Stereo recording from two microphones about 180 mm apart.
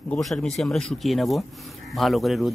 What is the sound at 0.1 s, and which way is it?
Speech, 5° left (ahead or behind).